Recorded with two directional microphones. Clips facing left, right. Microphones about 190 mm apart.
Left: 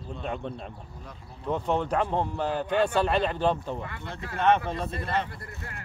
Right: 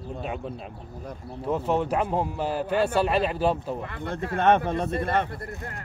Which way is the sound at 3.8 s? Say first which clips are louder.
Right 6 dB; 55° right (ahead or behind).